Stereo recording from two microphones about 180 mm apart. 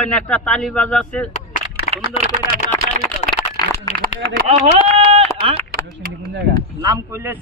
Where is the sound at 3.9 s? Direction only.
55° right (ahead or behind).